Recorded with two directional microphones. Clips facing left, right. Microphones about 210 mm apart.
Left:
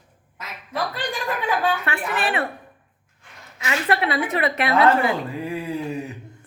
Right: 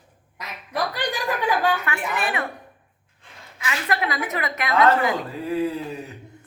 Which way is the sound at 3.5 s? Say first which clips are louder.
Left 3 dB; 30° left (ahead or behind).